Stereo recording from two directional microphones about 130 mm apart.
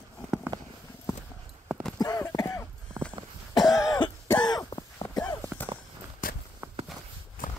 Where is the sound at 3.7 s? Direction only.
25° left (ahead or behind).